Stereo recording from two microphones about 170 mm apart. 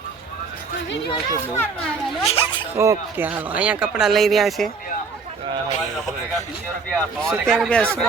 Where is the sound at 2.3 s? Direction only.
30° left (ahead or behind).